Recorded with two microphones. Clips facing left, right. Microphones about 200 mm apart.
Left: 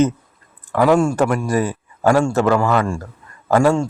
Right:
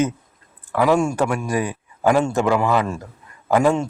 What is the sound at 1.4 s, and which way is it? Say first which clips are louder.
Speech: left 3 dB; 15° right (ahead or behind).